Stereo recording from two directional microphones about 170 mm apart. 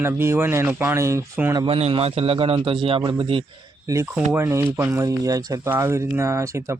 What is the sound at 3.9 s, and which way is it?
Speech, 15° right (ahead or behind).